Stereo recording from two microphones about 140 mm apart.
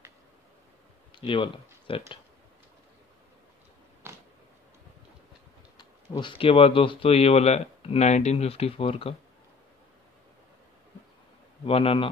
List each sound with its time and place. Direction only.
1.2 s speech: 40° left (ahead or behind)
4.0 s a sound: 15° right (ahead or behind)
5.8 s speech: 35° left (ahead or behind)
11.6 s a man's voice: 40° left (ahead or behind)